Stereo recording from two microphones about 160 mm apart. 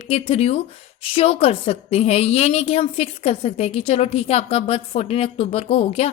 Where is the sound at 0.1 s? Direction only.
40° left (ahead or behind).